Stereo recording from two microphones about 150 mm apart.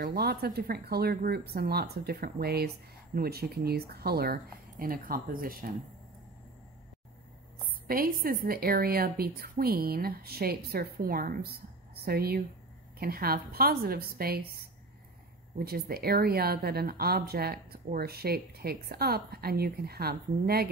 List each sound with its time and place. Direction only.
0.0 s a woman's voice: 90° right
7.9 s a woman's voice: 75° right (ahead or behind)